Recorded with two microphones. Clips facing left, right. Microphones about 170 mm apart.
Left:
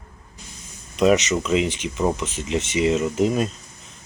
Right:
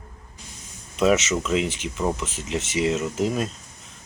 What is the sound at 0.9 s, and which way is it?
Speech, centre (ahead or behind).